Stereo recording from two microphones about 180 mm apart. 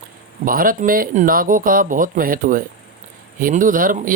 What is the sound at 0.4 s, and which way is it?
Speech, 50° right (ahead or behind).